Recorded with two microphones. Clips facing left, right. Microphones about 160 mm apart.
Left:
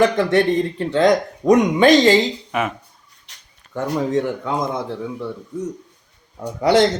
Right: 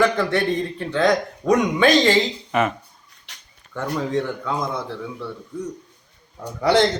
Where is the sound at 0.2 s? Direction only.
20° left (ahead or behind).